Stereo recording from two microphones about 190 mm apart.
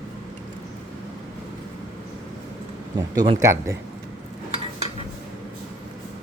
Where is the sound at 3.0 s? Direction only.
15° right (ahead or behind).